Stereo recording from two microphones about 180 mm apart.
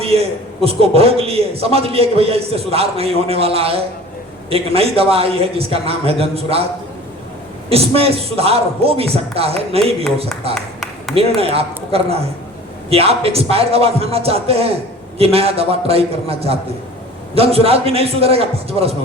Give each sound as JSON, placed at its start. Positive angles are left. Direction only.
{"t": 0.0, "sound": "a man's voice", "side_deg": -35}
{"t": 7.7, "sound": "a man's voice", "side_deg": -35}
{"t": 10.5, "sound": "a sound", "side_deg": 0}
{"t": 11.3, "sound": "a man's voice", "side_deg": -35}